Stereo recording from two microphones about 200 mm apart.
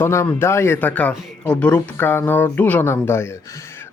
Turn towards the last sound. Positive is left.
turn(degrees=10)  # may be behind; listen again after turning